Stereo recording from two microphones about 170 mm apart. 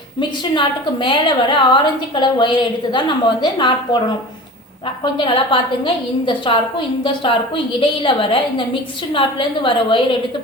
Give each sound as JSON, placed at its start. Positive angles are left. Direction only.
{"t": 0.2, "sound": "a woman's voice", "side_deg": 30}
{"t": 5.1, "sound": "a woman's voice", "side_deg": 30}